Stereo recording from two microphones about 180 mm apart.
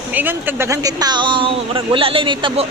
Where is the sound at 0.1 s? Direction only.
10° right (ahead or behind); by 2.6 s 25° right (ahead or behind).